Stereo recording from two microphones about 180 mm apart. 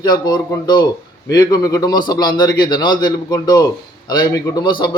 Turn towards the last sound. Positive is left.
turn(degrees=25)  # may be behind; listen again after turning